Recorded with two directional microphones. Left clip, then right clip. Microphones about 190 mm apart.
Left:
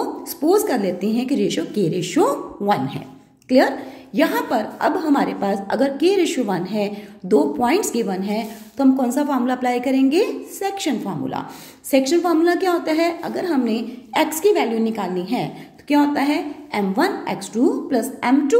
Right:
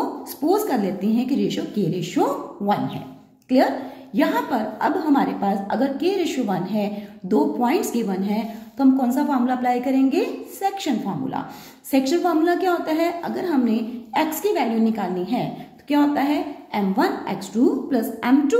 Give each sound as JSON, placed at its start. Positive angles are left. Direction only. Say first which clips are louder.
{"t": 0.5, "sound": "a woman's voice", "louder": "left 3 dB", "side_deg": 25}